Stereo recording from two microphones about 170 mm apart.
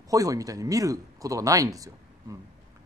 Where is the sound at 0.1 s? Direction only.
20° right (ahead or behind).